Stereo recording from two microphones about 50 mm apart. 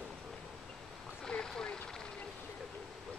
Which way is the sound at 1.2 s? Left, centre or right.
Centre.